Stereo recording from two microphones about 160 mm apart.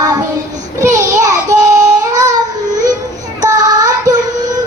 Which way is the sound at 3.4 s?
25° right (ahead or behind).